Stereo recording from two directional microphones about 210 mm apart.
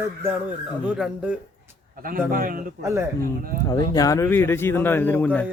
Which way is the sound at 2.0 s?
40° right (ahead or behind).